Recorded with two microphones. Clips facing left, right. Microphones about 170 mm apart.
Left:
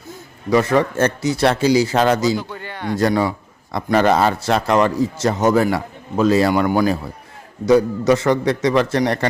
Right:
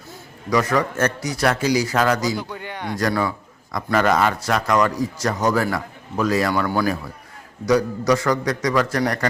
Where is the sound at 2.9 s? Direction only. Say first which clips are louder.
Left 5 dB; 25° left (ahead or behind).